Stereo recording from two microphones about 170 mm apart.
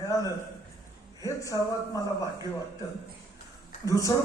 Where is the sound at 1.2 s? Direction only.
20° left (ahead or behind).